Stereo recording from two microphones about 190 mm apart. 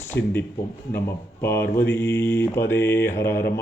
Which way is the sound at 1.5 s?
50° left (ahead or behind).